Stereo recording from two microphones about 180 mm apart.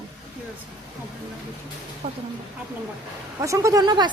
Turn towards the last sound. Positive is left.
turn(degrees=-25)  # may be behind; listen again after turning